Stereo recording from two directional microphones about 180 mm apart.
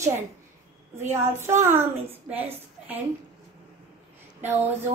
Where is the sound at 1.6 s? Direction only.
15° right (ahead or behind).